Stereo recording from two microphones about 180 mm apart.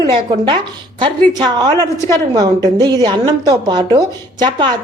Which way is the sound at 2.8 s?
20° right (ahead or behind).